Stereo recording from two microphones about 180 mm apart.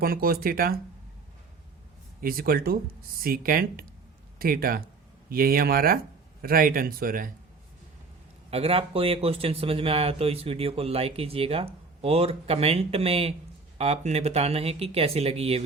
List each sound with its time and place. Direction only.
0.0 s speech: 55° right (ahead or behind)
2.2 s a man's voice: 55° right (ahead or behind)
8.4 s speech: 35° right (ahead or behind)